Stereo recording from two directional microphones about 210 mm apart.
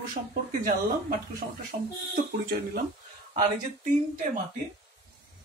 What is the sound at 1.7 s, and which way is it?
Speech, 45° right (ahead or behind).